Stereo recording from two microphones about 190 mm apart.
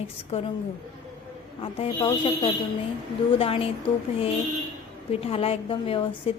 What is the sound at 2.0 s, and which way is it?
Speech, 25° left (ahead or behind).